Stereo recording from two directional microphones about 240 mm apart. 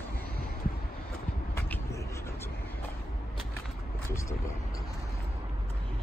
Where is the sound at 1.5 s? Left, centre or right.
Centre.